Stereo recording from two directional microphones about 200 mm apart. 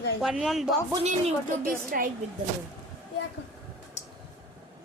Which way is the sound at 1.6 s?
45° right (ahead or behind).